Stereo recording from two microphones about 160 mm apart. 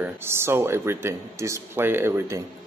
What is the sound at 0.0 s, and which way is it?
A man's voice, 15° right (ahead or behind).